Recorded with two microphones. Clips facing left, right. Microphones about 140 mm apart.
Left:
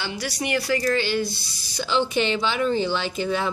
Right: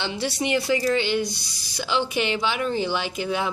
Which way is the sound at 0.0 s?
25° right (ahead or behind).